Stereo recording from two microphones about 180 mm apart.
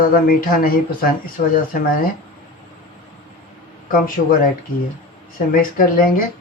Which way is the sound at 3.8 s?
50° left (ahead or behind).